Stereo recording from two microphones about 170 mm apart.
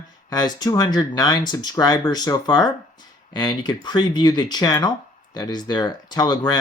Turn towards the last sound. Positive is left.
turn(degrees=25)  # may be behind; listen again after turning